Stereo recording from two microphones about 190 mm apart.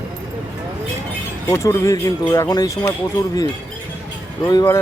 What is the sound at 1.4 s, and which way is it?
Speech, 15° left (ahead or behind).